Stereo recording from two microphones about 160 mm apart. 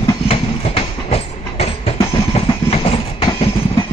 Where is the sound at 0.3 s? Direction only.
40° left (ahead or behind).